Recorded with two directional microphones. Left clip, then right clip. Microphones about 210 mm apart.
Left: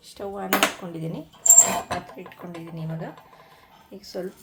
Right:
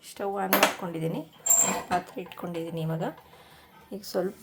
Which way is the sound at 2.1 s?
20° right (ahead or behind).